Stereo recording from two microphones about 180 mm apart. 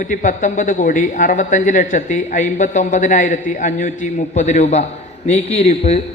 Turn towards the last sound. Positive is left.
turn(degrees=35)  # may be behind; listen again after turning